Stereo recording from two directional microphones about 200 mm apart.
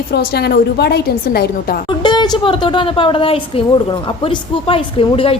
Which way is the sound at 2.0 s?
20° left (ahead or behind).